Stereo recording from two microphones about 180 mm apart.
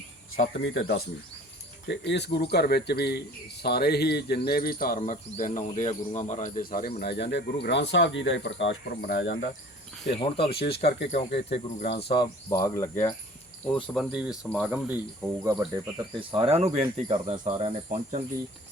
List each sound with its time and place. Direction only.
0.3 s speech: 90° left
1.9 s speech: 70° left (ahead or behind); by 6.9 s 55° left (ahead or behind)
7.0 s speech: 70° left (ahead or behind)
10.1 s speech: 30° left (ahead or behind)
10.5 s speech: 65° left (ahead or behind)
11.1 s speech: 35° left (ahead or behind); by 13.1 s 15° left (ahead or behind)
13.9 s speech: 5° right (ahead or behind)
16.3 s speech: 35° right (ahead or behind)